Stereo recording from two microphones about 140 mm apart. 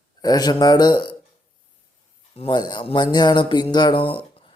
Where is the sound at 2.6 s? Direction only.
30° left (ahead or behind).